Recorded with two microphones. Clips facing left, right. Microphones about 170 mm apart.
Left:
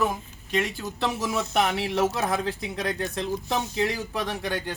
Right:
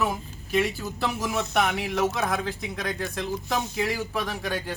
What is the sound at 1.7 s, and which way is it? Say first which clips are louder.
A man's voice: left 1 dB; 30° left (ahead or behind).